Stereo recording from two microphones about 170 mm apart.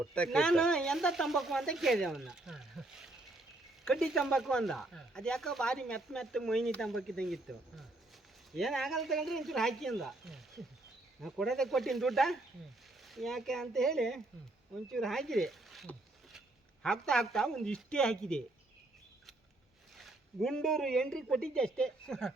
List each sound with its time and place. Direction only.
0.1 s speech: 5° left (ahead or behind)
20.1 s speech: 5° left (ahead or behind)